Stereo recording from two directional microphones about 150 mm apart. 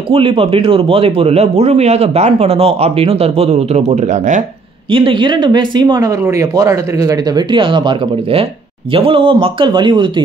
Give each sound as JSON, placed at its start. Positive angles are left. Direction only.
{"t": 0.1, "sound": "speech", "side_deg": -35}
{"t": 4.9, "sound": "speech", "side_deg": -35}